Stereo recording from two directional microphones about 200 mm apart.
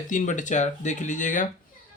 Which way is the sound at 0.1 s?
40° left (ahead or behind).